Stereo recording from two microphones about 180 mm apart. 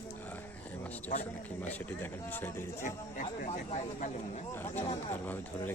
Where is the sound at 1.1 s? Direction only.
40° left (ahead or behind).